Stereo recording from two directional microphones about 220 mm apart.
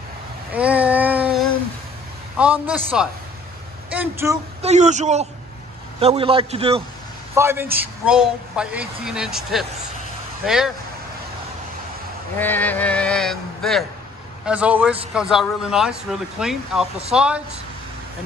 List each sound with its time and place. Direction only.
0.5 s child singing: 5° right (ahead or behind)
2.3 s a man's voice: 5° right (ahead or behind)
4.6 s a man's voice: 30° right (ahead or behind)
7.3 s a man's voice: 10° right (ahead or behind)
12.4 s a man's voice: 10° left (ahead or behind)